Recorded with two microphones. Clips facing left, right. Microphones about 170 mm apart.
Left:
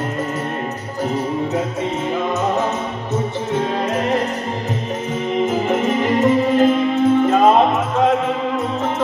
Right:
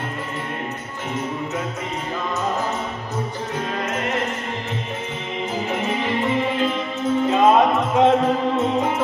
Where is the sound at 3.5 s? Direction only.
35° left (ahead or behind).